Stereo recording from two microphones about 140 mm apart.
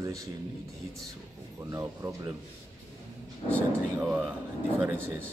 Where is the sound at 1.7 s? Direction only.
25° right (ahead or behind).